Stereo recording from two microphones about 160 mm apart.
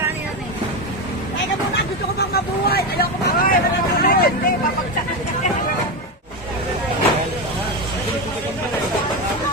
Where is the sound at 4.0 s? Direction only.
70° left (ahead or behind).